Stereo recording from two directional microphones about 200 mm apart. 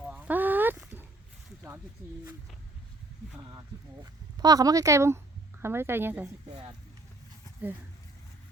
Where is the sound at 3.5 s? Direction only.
20° right (ahead or behind).